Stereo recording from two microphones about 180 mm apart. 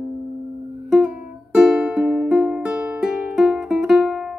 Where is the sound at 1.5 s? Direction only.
5° right (ahead or behind).